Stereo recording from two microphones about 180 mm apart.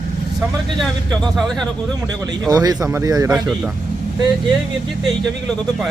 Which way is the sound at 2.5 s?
20° right (ahead or behind).